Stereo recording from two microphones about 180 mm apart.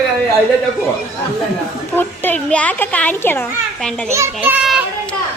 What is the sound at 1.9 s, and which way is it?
A child's voice, 10° left (ahead or behind).